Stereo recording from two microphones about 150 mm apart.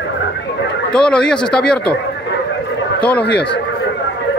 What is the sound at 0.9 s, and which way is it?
Speech, 5° left (ahead or behind).